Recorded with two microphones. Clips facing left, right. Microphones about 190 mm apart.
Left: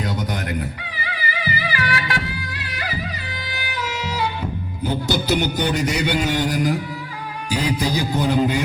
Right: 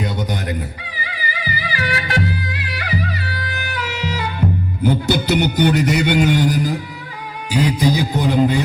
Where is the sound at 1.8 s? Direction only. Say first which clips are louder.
Right 5 dB; 40° right (ahead or behind).